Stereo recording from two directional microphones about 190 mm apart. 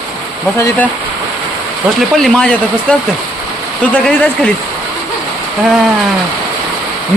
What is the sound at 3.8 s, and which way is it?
Speech, 5° left (ahead or behind).